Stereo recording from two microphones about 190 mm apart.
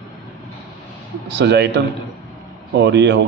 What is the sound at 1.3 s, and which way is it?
Speech, 65° right (ahead or behind).